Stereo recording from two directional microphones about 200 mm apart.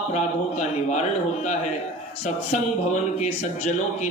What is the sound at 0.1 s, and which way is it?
Speech, 35° left (ahead or behind).